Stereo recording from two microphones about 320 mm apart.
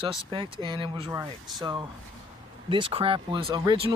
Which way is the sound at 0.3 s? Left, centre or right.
Centre.